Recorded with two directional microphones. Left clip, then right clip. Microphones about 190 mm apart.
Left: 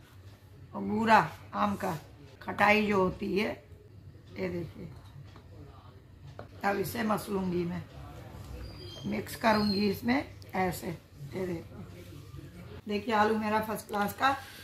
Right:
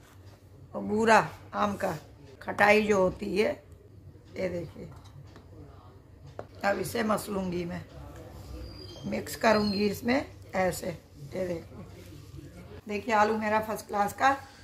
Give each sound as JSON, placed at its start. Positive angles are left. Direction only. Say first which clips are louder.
{"t": 0.7, "sound": "speech", "louder": "right 2 dB", "side_deg": -40}
{"t": 6.6, "sound": "speech", "louder": "right 2 dB", "side_deg": -40}
{"t": 9.1, "sound": "speech", "louder": "right 3 dB", "side_deg": -35}
{"t": 12.8, "sound": "a woman's voice", "louder": "right 2 dB", "side_deg": -15}